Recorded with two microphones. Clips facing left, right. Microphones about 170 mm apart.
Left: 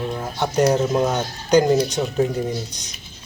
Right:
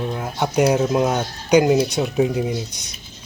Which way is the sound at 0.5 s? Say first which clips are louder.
Right 1 dB; 10° right (ahead or behind).